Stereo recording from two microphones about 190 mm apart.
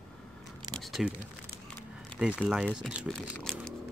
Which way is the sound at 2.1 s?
5° right (ahead or behind).